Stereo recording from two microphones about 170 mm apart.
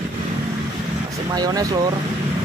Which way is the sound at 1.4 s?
20° right (ahead or behind).